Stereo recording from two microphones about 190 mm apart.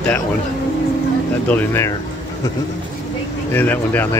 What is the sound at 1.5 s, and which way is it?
Speech, 10° left (ahead or behind).